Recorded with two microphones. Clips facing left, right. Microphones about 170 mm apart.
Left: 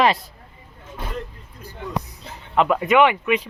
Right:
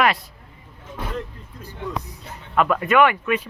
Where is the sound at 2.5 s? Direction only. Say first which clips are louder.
Left 1 dB; 20° left (ahead or behind).